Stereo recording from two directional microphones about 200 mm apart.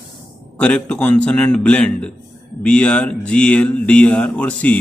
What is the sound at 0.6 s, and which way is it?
A man's voice, 5° left (ahead or behind).